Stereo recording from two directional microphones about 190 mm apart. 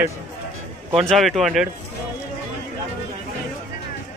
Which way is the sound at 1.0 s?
Centre (ahead or behind).